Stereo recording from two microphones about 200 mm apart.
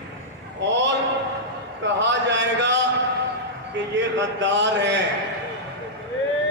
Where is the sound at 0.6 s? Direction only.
65° right (ahead or behind).